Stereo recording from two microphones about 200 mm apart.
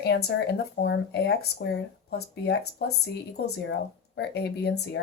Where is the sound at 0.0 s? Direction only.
55° left (ahead or behind).